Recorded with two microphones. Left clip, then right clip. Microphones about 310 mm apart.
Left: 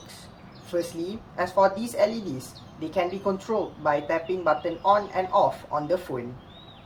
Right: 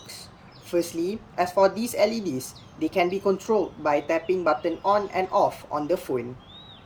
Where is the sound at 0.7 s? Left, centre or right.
Right.